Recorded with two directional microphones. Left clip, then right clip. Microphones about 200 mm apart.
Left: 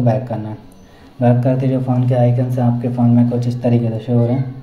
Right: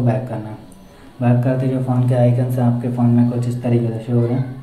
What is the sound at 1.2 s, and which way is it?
Speech, 40° left (ahead or behind).